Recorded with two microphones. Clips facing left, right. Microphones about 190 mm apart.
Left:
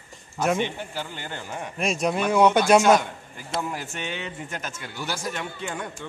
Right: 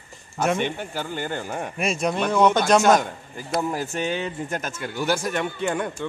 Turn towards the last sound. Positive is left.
turn(degrees=-60)  # may be behind; listen again after turning